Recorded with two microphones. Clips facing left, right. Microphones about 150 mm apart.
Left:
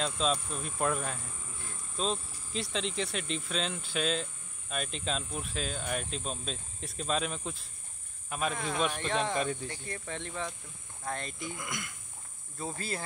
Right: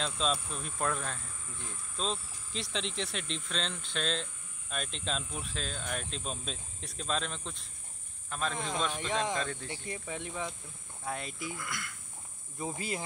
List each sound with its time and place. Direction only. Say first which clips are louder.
0.0 s cricket: left 2 dB; centre (ahead or behind)
8.3 s speech: left 2 dB; 10° left (ahead or behind)
9.7 s speech: even; 10° right (ahead or behind)
11.1 s cricket: left 1 dB; 5° right (ahead or behind)
11.5 s speech: left 1 dB; 20° left (ahead or behind)
12.5 s speech: right 1 dB; 15° right (ahead or behind)